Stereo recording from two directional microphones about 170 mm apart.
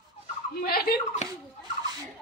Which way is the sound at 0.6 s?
65° left (ahead or behind).